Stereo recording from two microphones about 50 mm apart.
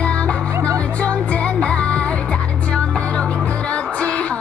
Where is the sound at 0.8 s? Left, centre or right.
Left.